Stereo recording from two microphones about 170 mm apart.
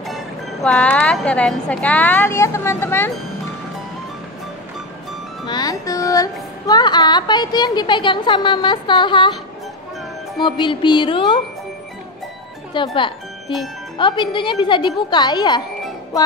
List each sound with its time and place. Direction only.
0.0 s a woman's voice: centre (ahead or behind)
5.5 s music: 20° left (ahead or behind)
10.4 s music: 25° left (ahead or behind)
12.7 s music: 30° left (ahead or behind)